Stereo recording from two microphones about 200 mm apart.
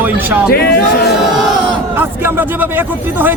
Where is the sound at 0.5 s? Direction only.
50° left (ahead or behind).